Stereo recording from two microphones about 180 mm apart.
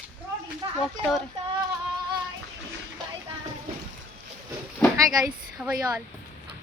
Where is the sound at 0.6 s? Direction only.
25° right (ahead or behind).